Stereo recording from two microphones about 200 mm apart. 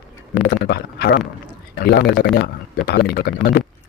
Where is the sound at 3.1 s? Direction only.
45° left (ahead or behind).